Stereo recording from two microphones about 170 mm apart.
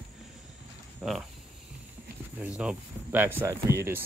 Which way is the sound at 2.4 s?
5° right (ahead or behind).